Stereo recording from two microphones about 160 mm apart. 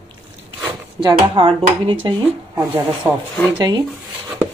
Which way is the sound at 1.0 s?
30° right (ahead or behind).